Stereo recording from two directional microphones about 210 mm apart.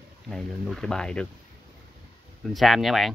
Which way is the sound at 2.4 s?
Centre (ahead or behind).